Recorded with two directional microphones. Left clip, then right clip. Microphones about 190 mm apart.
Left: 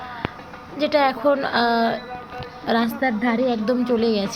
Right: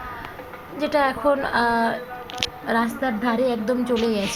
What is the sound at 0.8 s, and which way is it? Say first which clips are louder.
A woman's voice: left 2 dB; 10° left (ahead or behind).